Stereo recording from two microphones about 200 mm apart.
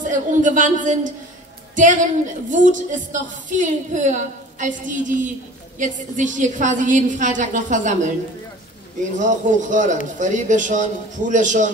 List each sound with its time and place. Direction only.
0.0 s a woman's voice: 40° right (ahead or behind)
9.1 s a woman's voice: 40° right (ahead or behind)